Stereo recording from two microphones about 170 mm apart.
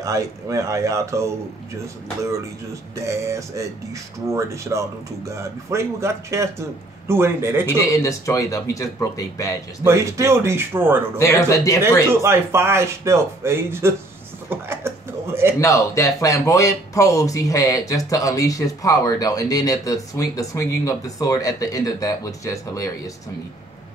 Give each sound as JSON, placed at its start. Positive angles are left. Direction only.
{"t": 0.0, "sound": "a man's voice", "side_deg": -20}
{"t": 3.0, "sound": "a man's voice", "side_deg": -15}
{"t": 7.9, "sound": "speech", "side_deg": 20}
{"t": 9.8, "sound": "a man's voice", "side_deg": -15}
{"t": 11.1, "sound": "speech", "side_deg": 20}
{"t": 12.1, "sound": "a man's voice", "side_deg": -15}
{"t": 14.5, "sound": "chuckle", "side_deg": -15}
{"t": 15.6, "sound": "speech", "side_deg": 20}